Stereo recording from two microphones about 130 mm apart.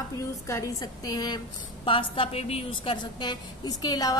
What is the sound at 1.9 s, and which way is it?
A woman's voice, 45° left (ahead or behind).